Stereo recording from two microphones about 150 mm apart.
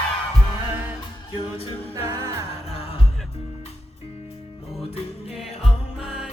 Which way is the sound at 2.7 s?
40° left (ahead or behind).